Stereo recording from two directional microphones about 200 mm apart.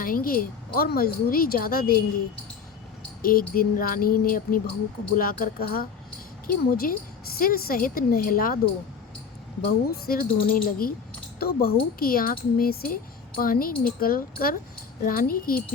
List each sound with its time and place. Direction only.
0.0 s speech: 45° left (ahead or behind)
3.2 s speech: 45° left (ahead or behind)
9.9 s speech: 45° left (ahead or behind)